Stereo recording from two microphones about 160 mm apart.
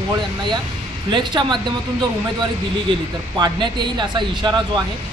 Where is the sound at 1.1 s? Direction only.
30° right (ahead or behind).